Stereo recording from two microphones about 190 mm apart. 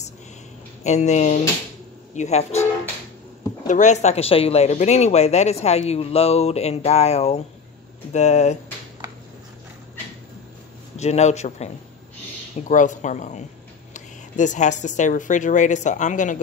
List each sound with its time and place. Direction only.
0.8 s speech: 35° left (ahead or behind)
11.0 s speech: 35° left (ahead or behind)